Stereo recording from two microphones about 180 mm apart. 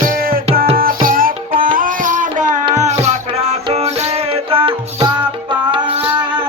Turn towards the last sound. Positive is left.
turn(degrees=-30)  # may be behind; listen again after turning